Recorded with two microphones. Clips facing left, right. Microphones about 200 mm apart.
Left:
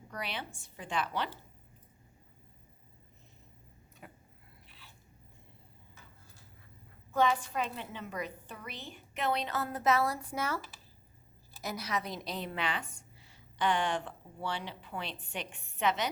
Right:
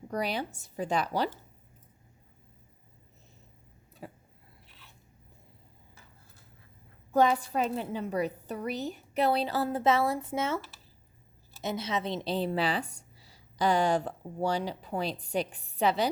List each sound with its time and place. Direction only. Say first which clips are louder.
0.1 s a woman's voice: right 9 dB; 40° right (ahead or behind)
4.0 s vehicle: right 8 dB; 30° right (ahead or behind)
7.1 s a woman's voice: right 5 dB; 40° right (ahead or behind)
11.6 s a woman's voice: right 5 dB; 25° right (ahead or behind)